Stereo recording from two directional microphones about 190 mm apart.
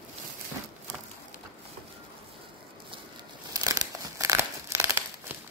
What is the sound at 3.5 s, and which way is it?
Crumpling, 20° right (ahead or behind).